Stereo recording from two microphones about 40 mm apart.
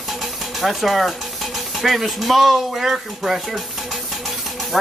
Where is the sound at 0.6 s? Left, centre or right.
Centre.